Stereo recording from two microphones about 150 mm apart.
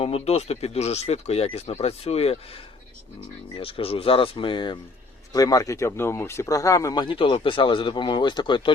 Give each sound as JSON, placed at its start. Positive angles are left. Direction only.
{"t": 0.0, "sound": "speech", "side_deg": 45}
{"t": 3.5, "sound": "speech", "side_deg": 40}